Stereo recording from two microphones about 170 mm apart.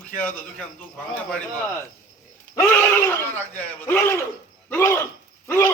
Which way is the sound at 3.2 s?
10° left (ahead or behind).